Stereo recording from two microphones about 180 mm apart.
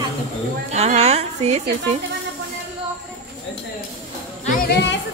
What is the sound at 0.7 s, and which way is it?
Speech, 35° right (ahead or behind).